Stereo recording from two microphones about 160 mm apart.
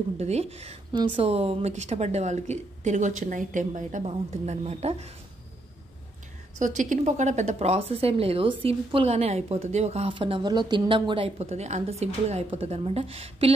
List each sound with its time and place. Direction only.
0.2 s a woman's voice: 40° right (ahead or behind)
6.6 s a woman's voice: 50° right (ahead or behind)